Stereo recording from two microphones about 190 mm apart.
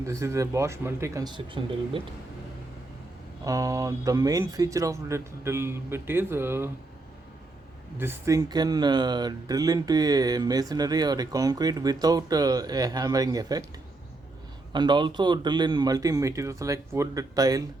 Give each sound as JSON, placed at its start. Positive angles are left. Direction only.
{"t": 0.0, "sound": "speech", "side_deg": -15}
{"t": 3.4, "sound": "speech", "side_deg": -15}
{"t": 7.9, "sound": "speech", "side_deg": -10}
{"t": 14.7, "sound": "speech", "side_deg": -25}